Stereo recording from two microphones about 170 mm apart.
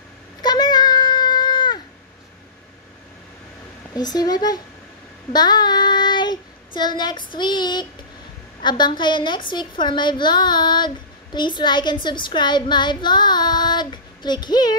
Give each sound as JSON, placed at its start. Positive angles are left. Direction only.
{"t": 0.4, "sound": "child singing", "side_deg": 25}
{"t": 3.9, "sound": "a woman's voice", "side_deg": 25}
{"t": 5.3, "sound": "child singing", "side_deg": 25}
{"t": 8.6, "sound": "a woman's voice", "side_deg": 25}